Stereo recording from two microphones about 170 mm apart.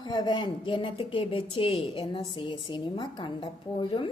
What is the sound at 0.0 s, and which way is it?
A woman's voice, 25° left (ahead or behind).